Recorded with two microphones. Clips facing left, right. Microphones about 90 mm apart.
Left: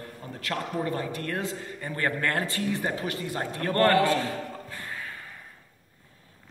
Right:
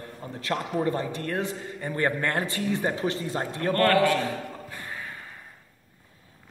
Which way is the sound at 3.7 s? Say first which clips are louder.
Even; 20° left (ahead or behind).